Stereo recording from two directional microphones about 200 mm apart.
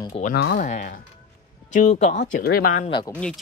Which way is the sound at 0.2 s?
55° left (ahead or behind).